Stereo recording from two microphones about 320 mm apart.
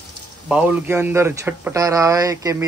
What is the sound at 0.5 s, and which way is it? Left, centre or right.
Speech, centre.